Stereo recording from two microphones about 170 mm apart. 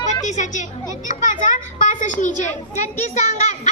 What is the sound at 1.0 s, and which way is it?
A child's voice, 50° left (ahead or behind).